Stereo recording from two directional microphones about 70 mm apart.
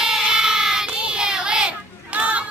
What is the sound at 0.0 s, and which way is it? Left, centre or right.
Child singing, centre.